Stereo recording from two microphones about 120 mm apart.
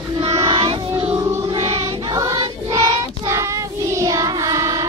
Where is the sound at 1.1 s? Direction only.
30° right (ahead or behind).